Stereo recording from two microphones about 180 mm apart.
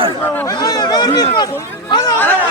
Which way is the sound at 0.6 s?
20° left (ahead or behind).